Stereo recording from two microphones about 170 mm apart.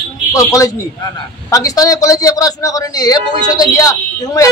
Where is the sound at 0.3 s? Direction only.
20° left (ahead or behind).